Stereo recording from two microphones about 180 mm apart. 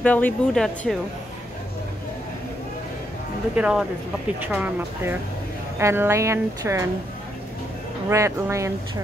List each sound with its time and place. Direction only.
0.0 s speech: 10° left (ahead or behind)
3.5 s speech: 5° right (ahead or behind)
8.1 s speech: 15° right (ahead or behind)